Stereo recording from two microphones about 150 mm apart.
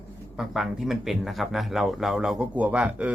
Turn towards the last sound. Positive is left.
turn(degrees=-10)  # may be behind; listen again after turning